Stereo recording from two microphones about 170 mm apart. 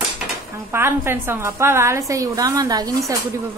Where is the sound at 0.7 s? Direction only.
15° right (ahead or behind).